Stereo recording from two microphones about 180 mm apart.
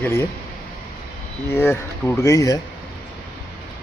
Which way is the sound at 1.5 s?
15° left (ahead or behind).